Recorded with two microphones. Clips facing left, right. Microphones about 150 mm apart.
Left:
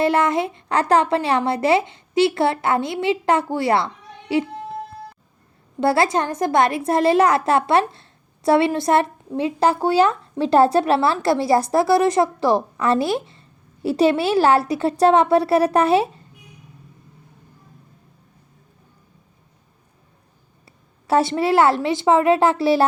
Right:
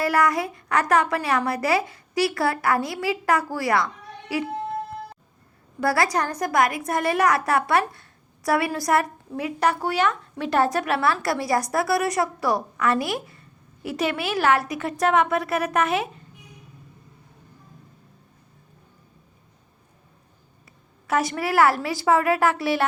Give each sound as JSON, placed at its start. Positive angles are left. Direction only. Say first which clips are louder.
{"t": 0.0, "sound": "a woman's voice", "louder": "left 4 dB", "side_deg": 25}
{"t": 5.8, "sound": "a woman's voice", "louder": "left 4 dB", "side_deg": 25}
{"t": 21.1, "sound": "a woman's voice", "louder": "left 6 dB", "side_deg": 30}